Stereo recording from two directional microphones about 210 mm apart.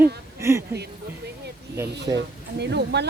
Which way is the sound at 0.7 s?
50° right (ahead or behind).